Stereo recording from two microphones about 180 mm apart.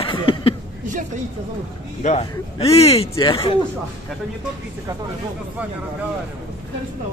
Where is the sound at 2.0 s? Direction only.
35° left (ahead or behind).